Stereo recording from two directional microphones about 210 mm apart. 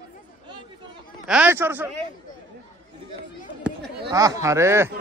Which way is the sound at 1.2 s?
5° right (ahead or behind).